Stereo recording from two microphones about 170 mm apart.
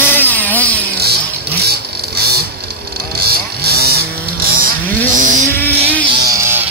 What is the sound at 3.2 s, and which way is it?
Vehicle, 65° right (ahead or behind).